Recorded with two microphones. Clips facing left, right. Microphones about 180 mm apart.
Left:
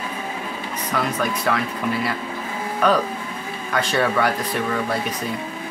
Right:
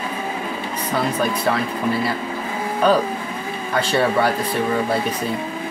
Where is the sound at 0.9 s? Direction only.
30° right (ahead or behind).